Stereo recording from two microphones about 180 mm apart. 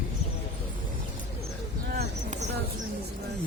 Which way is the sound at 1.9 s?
55° right (ahead or behind).